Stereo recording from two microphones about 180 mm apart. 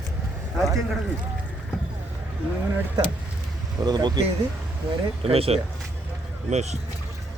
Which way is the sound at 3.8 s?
25° right (ahead or behind).